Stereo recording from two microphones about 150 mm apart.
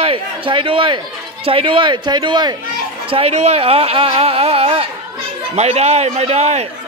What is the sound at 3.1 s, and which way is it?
A man's voice, 40° right (ahead or behind).